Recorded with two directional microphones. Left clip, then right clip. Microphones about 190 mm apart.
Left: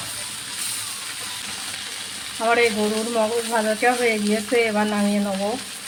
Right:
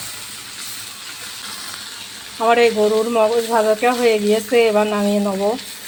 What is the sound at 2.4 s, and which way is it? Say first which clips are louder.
Frying: right 5 dB; 25° right (ahead or behind).